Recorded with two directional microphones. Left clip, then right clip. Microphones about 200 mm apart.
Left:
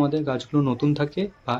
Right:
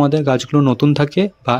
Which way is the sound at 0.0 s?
35° right (ahead or behind).